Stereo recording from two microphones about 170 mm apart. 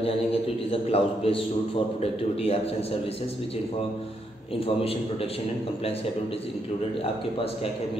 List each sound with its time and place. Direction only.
0.0 s a man's voice: 35° left (ahead or behind)